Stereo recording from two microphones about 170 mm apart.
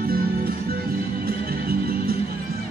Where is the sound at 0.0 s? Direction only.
60° right (ahead or behind).